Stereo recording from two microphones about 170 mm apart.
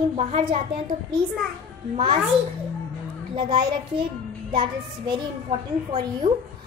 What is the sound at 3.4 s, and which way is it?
A child's voice, 30° right (ahead or behind).